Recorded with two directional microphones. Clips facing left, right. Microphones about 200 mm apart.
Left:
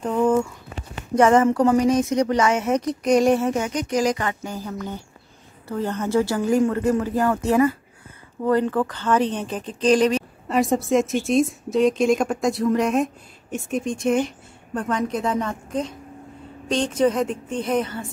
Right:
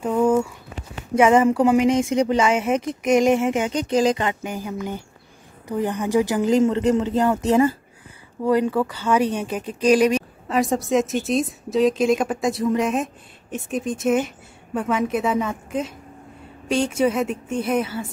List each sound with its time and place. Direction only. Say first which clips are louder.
0.0 s a sound: right 1 dB; 10° right (ahead or behind)
1.1 s speech: even; 10° right (ahead or behind)
1.8 s speech: right 1 dB; 25° right (ahead or behind)
10.5 s a woman's voice: left 1 dB; centre (ahead or behind)